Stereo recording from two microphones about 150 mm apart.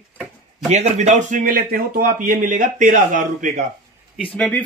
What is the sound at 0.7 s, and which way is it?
Speech, 50° right (ahead or behind).